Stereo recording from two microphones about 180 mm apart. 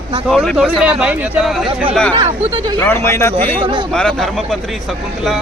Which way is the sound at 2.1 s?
30° right (ahead or behind).